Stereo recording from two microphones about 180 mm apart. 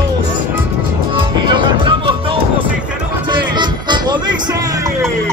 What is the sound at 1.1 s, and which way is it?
Music, 25° right (ahead or behind).